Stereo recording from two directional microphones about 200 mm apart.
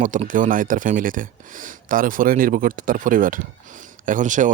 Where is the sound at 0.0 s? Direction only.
40° right (ahead or behind).